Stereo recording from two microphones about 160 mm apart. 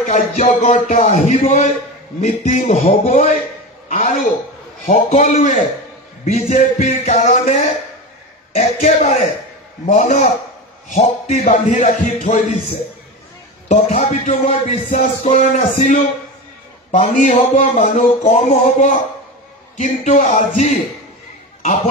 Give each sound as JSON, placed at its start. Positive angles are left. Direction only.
{"t": 0.0, "sound": "music", "side_deg": 45}
{"t": 3.9, "sound": "a man's voice", "side_deg": 55}
{"t": 4.8, "sound": "music", "side_deg": 50}
{"t": 13.7, "sound": "music", "side_deg": 45}
{"t": 20.1, "sound": "music", "side_deg": 50}